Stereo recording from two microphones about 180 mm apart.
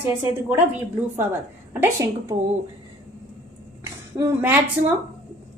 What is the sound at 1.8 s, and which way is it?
Speech, 15° right (ahead or behind).